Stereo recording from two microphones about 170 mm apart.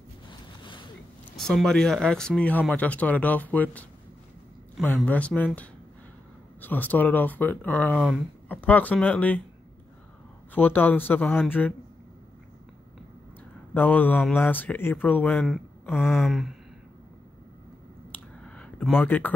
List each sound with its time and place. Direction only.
0.3 s a sound: 25° left (ahead or behind)
1.3 s speech: centre (ahead or behind)
4.8 s speech: 10° left (ahead or behind)
10.5 s speech: 10° left (ahead or behind)
13.7 s speech: 10° left (ahead or behind)
18.4 s a sound: 5° left (ahead or behind)